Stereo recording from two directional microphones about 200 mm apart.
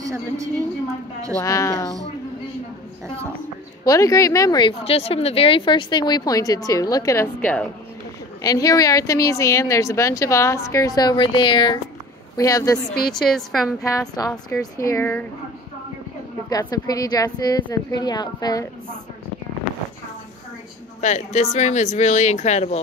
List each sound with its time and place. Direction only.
0.0 s a woman's voice: 15° right (ahead or behind)
1.4 s speech: 15° left (ahead or behind)
3.8 s speech: 15° left (ahead or behind)
13.2 s a woman's voice: centre (ahead or behind)
13.9 s a woman's voice: 20° left (ahead or behind)
16.4 s a woman's voice: 20° left (ahead or behind)
21.0 s speech: 35° left (ahead or behind)